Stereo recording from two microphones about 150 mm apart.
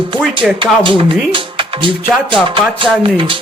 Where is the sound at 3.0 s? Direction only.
35° right (ahead or behind).